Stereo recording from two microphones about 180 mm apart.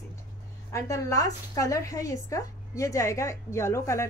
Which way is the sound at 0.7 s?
15° left (ahead or behind).